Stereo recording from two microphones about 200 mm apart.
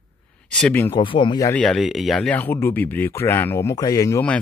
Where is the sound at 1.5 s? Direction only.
Centre (ahead or behind).